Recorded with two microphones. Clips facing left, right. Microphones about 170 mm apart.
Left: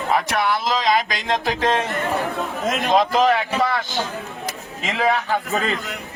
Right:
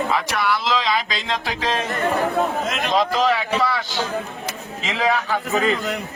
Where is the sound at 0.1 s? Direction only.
50° left (ahead or behind).